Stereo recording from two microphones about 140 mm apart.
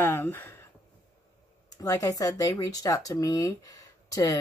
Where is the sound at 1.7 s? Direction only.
25° left (ahead or behind).